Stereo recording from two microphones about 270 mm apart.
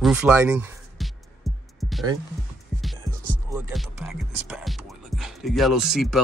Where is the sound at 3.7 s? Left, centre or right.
Centre.